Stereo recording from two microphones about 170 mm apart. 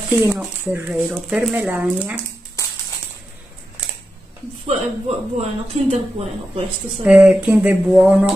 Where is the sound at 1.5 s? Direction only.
10° right (ahead or behind).